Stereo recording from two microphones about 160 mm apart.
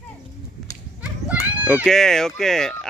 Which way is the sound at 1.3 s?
10° right (ahead or behind).